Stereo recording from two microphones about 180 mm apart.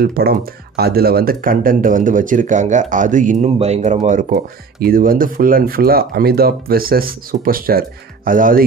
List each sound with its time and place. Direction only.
0.0 s speech: 60° right (ahead or behind)